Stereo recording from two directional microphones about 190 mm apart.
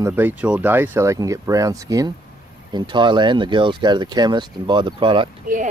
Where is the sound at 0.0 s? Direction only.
10° right (ahead or behind); by 5.3 s 25° right (ahead or behind).